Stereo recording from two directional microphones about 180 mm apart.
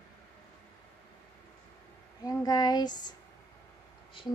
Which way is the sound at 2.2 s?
20° left (ahead or behind).